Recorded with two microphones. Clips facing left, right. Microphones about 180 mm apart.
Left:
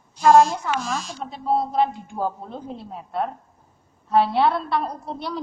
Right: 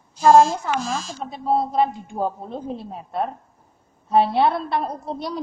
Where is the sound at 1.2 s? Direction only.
20° right (ahead or behind).